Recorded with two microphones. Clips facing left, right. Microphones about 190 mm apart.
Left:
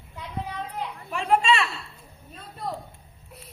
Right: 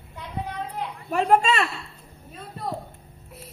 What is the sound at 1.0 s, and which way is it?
Speech, 40° right (ahead or behind).